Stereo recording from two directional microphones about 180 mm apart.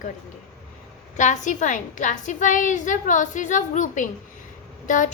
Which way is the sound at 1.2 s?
45° left (ahead or behind).